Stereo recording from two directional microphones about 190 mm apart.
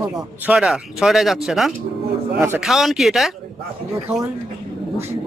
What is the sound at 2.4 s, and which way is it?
Speech, 10° right (ahead or behind).